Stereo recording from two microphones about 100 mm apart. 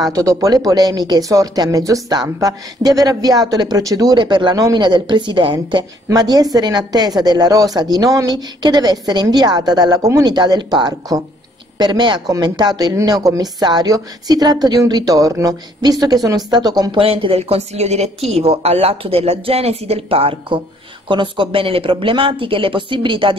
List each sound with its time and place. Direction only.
0.0 s a woman's voice: 35° right (ahead or behind); by 5.9 s 50° right (ahead or behind)
6.0 s a woman's voice: 40° right (ahead or behind)
16.9 s a woman's voice: 65° right (ahead or behind)
21.1 s speech: 55° right (ahead or behind)